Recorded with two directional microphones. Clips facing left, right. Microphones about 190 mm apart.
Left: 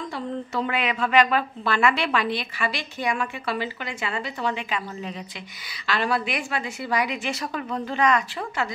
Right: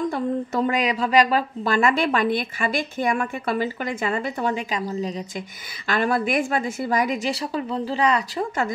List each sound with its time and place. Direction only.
0.1 s a woman's voice: 45° right (ahead or behind)
5.9 s a woman's voice: 50° right (ahead or behind)
7.3 s speech: 30° right (ahead or behind)